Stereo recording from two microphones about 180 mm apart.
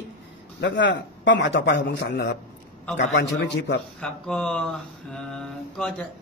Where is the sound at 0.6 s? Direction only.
80° left.